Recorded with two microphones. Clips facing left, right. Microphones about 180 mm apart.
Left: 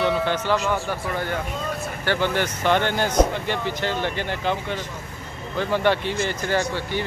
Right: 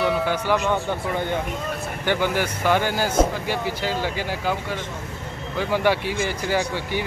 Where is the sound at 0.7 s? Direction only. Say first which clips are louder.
Right 2 dB; 20° right (ahead or behind).